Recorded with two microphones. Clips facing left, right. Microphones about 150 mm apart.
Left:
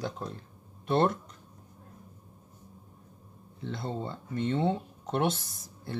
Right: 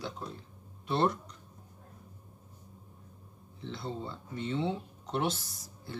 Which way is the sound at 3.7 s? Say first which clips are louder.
Left 3 dB; 50° left (ahead or behind).